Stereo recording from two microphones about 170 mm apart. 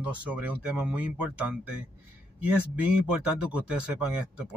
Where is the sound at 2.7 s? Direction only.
10° right (ahead or behind).